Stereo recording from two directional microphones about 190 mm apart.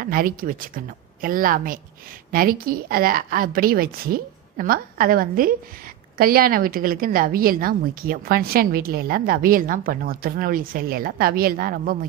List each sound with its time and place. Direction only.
0.0 s a woman's voice: 50° right (ahead or behind)